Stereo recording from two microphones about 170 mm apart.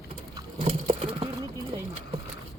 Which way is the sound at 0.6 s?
30° right (ahead or behind).